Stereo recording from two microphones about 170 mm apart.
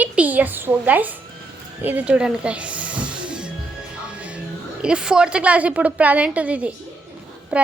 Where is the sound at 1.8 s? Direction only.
10° right (ahead or behind).